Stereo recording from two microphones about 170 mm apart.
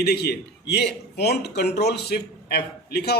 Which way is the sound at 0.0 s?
70° left (ahead or behind).